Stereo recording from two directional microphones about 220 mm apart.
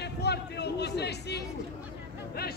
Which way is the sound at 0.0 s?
50° left (ahead or behind).